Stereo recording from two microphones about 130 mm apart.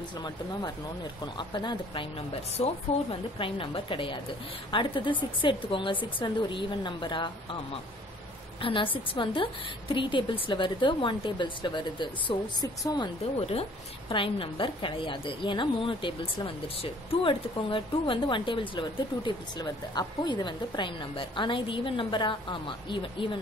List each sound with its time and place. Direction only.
0.2 s a woman's voice: 35° left (ahead or behind)
8.5 s a woman's voice: 45° left (ahead or behind)
13.5 s a woman's voice: 45° left (ahead or behind)